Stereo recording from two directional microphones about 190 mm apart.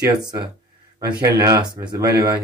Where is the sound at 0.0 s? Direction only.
20° right (ahead or behind).